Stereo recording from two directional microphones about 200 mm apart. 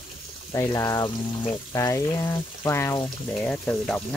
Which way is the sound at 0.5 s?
15° left (ahead or behind).